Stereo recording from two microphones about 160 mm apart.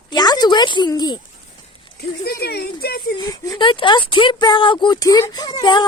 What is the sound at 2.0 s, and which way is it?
Speech, 80° left.